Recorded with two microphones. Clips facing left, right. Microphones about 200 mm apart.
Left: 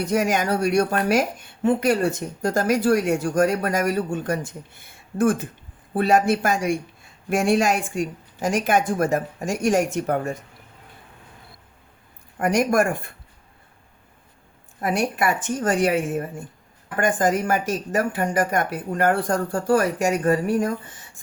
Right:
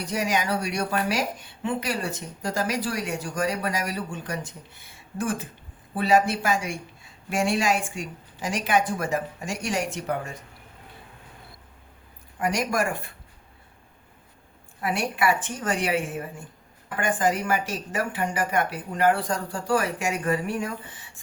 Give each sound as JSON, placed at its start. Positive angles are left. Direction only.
{"t": 0.0, "sound": "a woman's voice", "side_deg": 50}
{"t": 12.4, "sound": "a woman's voice", "side_deg": 50}
{"t": 14.8, "sound": "a woman's voice", "side_deg": 45}